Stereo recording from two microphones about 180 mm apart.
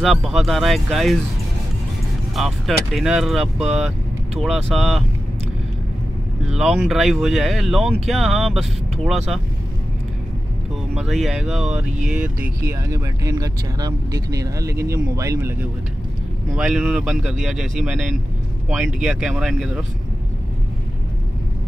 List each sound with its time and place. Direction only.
0.0 s speech: centre (ahead or behind)
2.3 s speech: centre (ahead or behind)
6.5 s speech: centre (ahead or behind)
11.0 s speech: centre (ahead or behind)
16.5 s speech: 5° right (ahead or behind)